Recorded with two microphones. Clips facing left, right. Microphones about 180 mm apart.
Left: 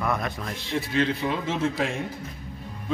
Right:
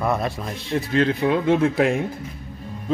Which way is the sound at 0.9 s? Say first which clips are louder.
Right 6 dB; 55° right (ahead or behind).